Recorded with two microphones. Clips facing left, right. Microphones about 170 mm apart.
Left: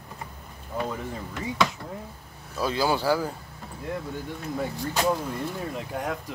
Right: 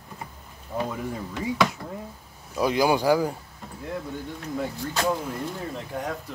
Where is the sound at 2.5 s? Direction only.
15° right (ahead or behind).